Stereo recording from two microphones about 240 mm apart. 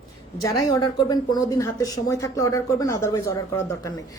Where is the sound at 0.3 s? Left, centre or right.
Centre.